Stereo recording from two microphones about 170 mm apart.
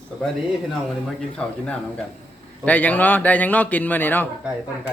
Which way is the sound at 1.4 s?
5° left (ahead or behind).